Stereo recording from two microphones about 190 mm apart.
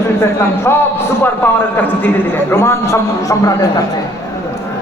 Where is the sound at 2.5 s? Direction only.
15° left (ahead or behind).